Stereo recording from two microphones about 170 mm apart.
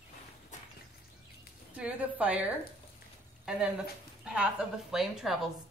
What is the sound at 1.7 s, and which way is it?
Speech, 10° right (ahead or behind).